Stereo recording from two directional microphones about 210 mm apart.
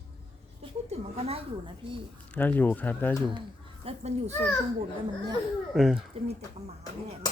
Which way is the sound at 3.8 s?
30° right (ahead or behind).